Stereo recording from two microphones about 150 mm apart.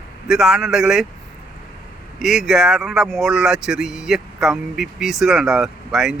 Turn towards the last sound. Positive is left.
turn(degrees=-5)  # may be behind; listen again after turning